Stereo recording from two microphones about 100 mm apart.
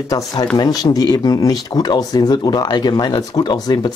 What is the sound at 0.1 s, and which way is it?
Speech, 40° left (ahead or behind).